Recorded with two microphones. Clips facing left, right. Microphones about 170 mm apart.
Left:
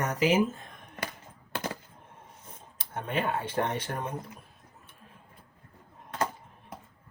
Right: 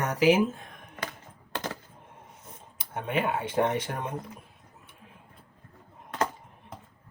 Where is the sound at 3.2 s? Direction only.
10° right (ahead or behind).